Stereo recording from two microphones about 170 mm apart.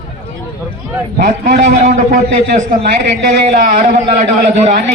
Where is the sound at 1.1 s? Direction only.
50° right (ahead or behind).